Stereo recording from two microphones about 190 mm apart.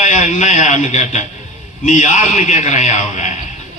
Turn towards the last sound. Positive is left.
turn(degrees=40)  # may be behind; listen again after turning